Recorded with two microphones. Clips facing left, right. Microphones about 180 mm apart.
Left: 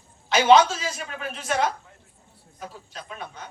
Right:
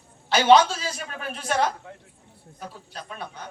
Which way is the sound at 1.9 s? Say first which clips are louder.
Right 11 dB; 70° right (ahead or behind).